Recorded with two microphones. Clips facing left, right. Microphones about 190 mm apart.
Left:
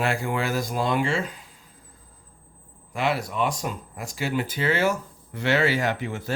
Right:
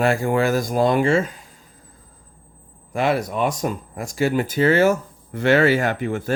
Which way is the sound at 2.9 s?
45° right (ahead or behind).